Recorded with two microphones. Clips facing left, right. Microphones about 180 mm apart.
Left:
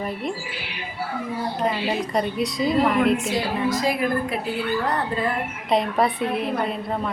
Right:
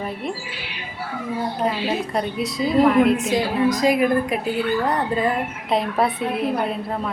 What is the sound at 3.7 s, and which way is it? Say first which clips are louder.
Speech: right 5 dB; 15° right (ahead or behind).